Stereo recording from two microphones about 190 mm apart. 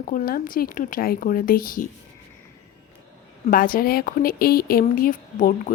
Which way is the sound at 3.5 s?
50° left (ahead or behind).